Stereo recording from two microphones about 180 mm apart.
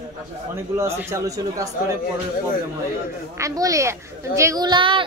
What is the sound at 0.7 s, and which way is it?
Speech, 15° right (ahead or behind).